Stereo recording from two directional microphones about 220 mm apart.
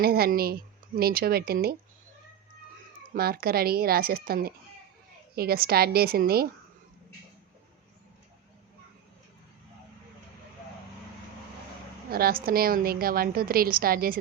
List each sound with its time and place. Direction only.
0.0 s speech: 45° right (ahead or behind)
3.1 s speech: 40° right (ahead or behind)
12.1 s a woman's voice: 40° right (ahead or behind)